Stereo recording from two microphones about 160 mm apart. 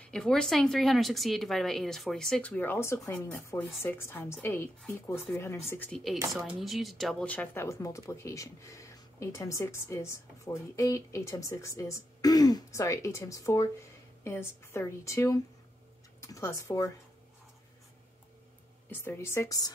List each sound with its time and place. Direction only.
0.0 s a woman's voice: 5° left (ahead or behind)
18.9 s speech: 15° left (ahead or behind)